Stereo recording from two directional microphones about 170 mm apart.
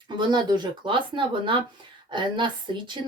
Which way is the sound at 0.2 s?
25° right (ahead or behind).